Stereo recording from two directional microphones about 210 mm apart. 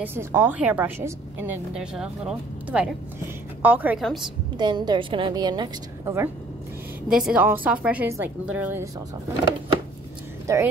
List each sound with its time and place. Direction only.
0.0 s a woman's voice: 10° right (ahead or behind)
4.6 s a woman's voice: 20° right (ahead or behind)
7.1 s a woman's voice: 5° right (ahead or behind)
10.4 s speech: 15° right (ahead or behind)